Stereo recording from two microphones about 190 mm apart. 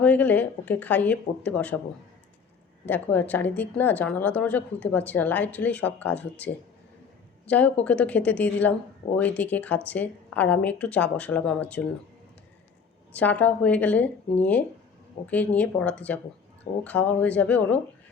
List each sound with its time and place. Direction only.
0.0 s a woman's voice: 10° left (ahead or behind)
2.8 s a woman's voice: 10° left (ahead or behind)
13.1 s a woman's voice: 10° left (ahead or behind)